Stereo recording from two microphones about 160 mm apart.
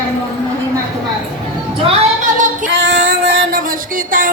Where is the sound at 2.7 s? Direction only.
90° right; by 4.3 s 60° right (ahead or behind).